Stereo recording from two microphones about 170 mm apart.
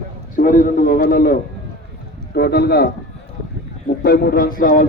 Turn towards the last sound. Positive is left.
turn(degrees=55)  # may be behind; listen again after turning